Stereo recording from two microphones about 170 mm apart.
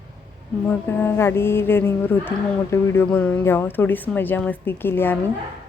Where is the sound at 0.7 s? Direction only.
10° left (ahead or behind).